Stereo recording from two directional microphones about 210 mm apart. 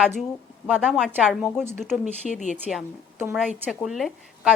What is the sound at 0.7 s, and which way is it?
A woman's voice, 5° right (ahead or behind).